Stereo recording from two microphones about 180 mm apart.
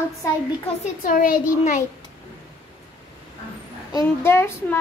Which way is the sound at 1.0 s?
50° left (ahead or behind).